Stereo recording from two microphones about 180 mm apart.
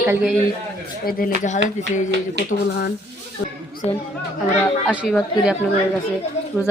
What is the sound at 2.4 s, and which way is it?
Speech, 70° right (ahead or behind).